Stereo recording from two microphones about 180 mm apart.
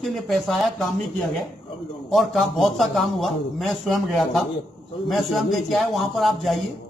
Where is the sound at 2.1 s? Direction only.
Centre (ahead or behind).